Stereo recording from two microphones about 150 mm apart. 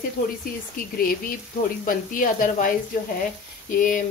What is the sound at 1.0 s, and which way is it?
Speech, 75° left (ahead or behind).